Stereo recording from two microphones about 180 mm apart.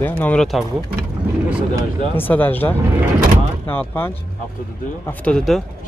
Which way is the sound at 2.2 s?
10° left (ahead or behind).